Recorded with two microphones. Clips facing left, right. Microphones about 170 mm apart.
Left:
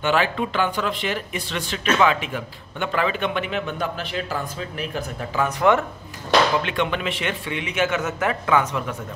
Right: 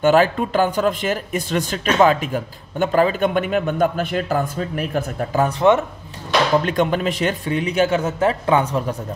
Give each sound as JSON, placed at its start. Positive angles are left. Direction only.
{"t": 0.0, "sound": "speech", "side_deg": -40}
{"t": 5.5, "sound": "speech", "side_deg": -20}
{"t": 6.6, "sound": "a man's voice", "side_deg": -40}